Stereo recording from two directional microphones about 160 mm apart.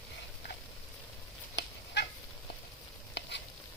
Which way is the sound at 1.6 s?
90° left.